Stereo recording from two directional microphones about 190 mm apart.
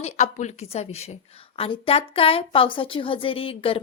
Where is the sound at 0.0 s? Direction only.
40° left (ahead or behind).